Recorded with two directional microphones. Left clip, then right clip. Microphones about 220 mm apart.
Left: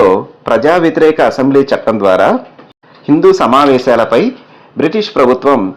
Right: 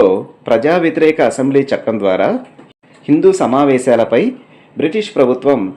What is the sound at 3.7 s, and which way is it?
Speech, centre (ahead or behind).